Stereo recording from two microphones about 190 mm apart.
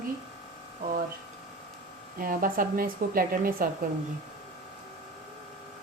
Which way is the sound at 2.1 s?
50° right (ahead or behind).